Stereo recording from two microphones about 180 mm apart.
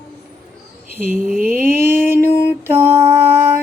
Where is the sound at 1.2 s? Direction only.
50° right (ahead or behind).